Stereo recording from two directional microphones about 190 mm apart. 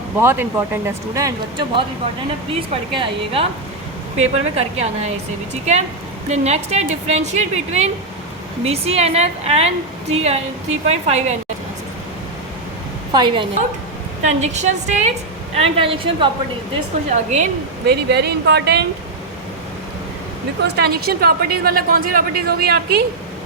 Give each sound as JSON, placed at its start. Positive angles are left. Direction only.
{"t": 0.2, "sound": "a woman's voice", "side_deg": -10}
{"t": 6.2, "sound": "a woman's voice", "side_deg": -35}
{"t": 13.1, "sound": "speech", "side_deg": -25}
{"t": 14.3, "sound": "a woman's voice", "side_deg": -40}
{"t": 17.8, "sound": "speech", "side_deg": -60}
{"t": 20.6, "sound": "a woman's voice", "side_deg": -60}